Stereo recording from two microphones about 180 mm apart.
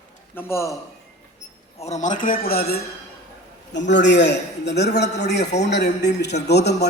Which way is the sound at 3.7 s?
75° left (ahead or behind).